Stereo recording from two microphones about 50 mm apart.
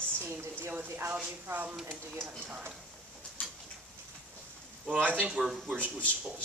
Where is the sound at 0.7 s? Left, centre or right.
Right.